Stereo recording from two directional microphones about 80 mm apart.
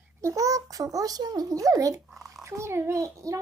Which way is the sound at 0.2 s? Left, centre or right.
Right.